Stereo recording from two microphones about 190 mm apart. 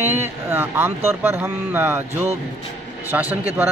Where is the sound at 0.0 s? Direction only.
10° right (ahead or behind).